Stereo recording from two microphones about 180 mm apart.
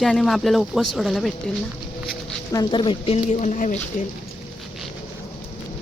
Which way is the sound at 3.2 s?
45° left (ahead or behind).